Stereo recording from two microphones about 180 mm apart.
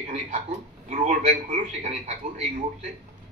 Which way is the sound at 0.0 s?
40° right (ahead or behind).